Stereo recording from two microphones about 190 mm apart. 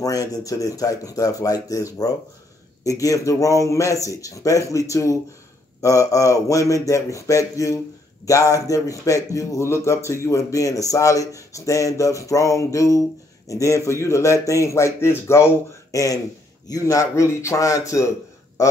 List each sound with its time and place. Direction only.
0.0 s speech: 20° left (ahead or behind)